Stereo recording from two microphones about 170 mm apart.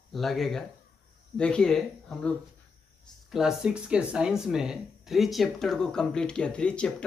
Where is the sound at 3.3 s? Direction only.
5° right (ahead or behind).